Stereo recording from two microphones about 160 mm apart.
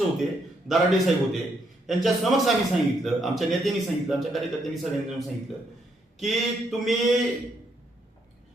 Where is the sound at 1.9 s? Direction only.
Centre (ahead or behind).